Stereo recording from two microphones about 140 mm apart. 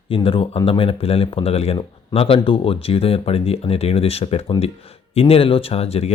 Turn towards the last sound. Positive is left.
turn(degrees=45)  # may be behind; listen again after turning